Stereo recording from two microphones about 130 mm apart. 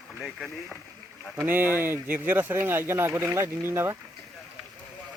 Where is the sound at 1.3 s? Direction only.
15° right (ahead or behind).